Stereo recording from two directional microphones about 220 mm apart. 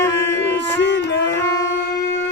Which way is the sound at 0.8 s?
55° left (ahead or behind).